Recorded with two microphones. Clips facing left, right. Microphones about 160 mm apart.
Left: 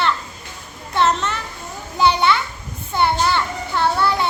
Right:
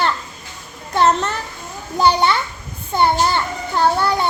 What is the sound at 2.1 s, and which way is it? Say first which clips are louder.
Speech: right 1 dB; 40° right (ahead or behind).